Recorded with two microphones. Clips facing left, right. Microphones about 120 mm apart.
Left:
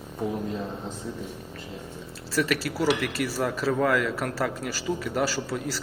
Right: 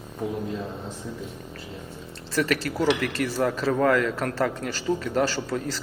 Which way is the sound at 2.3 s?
5° left (ahead or behind).